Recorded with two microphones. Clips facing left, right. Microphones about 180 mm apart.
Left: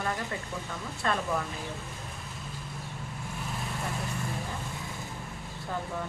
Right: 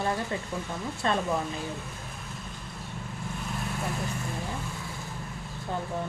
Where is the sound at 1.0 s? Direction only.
25° right (ahead or behind).